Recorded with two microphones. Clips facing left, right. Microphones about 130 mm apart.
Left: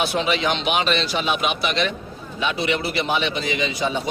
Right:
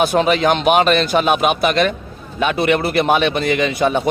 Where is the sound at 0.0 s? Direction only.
50° right (ahead or behind).